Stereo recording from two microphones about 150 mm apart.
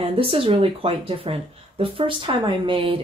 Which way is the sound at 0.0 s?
40° right (ahead or behind).